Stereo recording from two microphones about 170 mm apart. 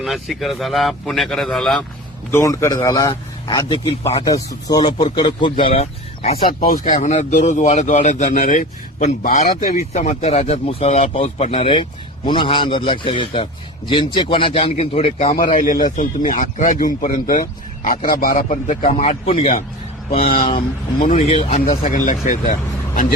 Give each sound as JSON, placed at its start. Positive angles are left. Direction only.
{"t": 0.0, "sound": "a man's voice", "side_deg": 0}
{"t": 2.3, "sound": "a man's voice", "side_deg": 15}
{"t": 6.6, "sound": "a man's voice", "side_deg": 55}
{"t": 15.4, "sound": "a man's voice", "side_deg": 55}
{"t": 21.6, "sound": "a man's voice", "side_deg": 55}